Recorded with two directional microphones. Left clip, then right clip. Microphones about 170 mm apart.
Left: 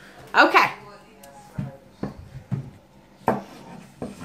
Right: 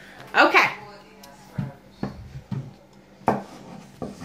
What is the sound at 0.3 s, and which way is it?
Speech, 15° left (ahead or behind).